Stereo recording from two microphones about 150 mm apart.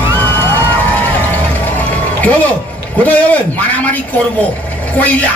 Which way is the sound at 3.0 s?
10° left (ahead or behind).